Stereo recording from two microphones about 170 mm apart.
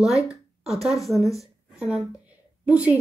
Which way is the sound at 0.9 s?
Centre (ahead or behind).